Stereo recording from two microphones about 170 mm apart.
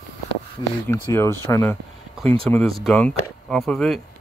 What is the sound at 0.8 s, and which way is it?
Speech, 15° left (ahead or behind).